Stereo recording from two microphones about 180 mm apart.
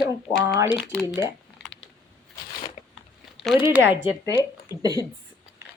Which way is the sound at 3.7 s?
10° right (ahead or behind).